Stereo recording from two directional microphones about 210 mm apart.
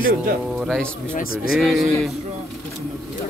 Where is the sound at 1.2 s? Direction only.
45° left (ahead or behind).